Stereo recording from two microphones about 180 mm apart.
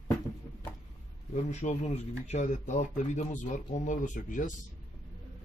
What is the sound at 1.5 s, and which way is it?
Speech, 40° left (ahead or behind).